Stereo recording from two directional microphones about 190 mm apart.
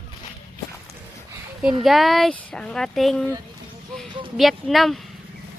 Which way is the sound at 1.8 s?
Centre (ahead or behind).